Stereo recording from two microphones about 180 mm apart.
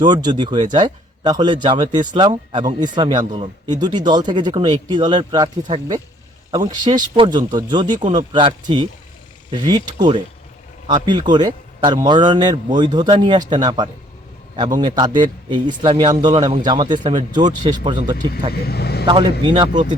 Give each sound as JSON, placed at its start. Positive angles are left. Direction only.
{"t": 0.0, "sound": "speech", "side_deg": -25}
{"t": 6.5, "sound": "speech", "side_deg": -20}
{"t": 18.5, "sound": "speech", "side_deg": 60}
{"t": 19.0, "sound": "speech", "side_deg": -25}